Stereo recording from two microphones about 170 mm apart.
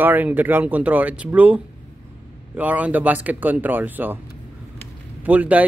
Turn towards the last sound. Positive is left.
turn(degrees=-10)  # may be behind; listen again after turning